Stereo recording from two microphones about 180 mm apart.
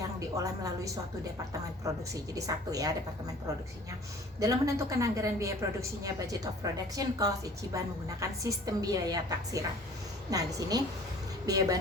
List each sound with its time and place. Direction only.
0.0 s a woman's voice: 20° right (ahead or behind)
2.3 s a woman's voice: 20° right (ahead or behind)
4.4 s a woman's voice: 20° right (ahead or behind)